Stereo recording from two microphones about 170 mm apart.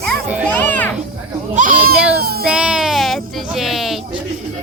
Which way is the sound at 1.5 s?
50° right (ahead or behind).